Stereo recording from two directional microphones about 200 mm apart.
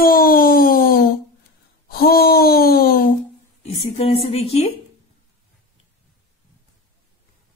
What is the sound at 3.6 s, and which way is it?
Speech, 30° left (ahead or behind).